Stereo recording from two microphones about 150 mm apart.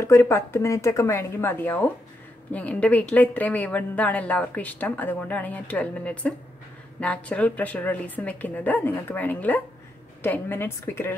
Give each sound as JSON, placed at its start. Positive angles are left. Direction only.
{"t": 0.0, "sound": "speech", "side_deg": 20}